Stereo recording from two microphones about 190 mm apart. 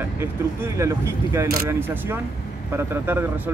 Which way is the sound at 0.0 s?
10° right (ahead or behind).